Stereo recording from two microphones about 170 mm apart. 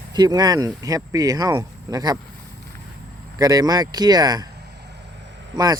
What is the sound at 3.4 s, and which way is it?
Speech, 20° right (ahead or behind).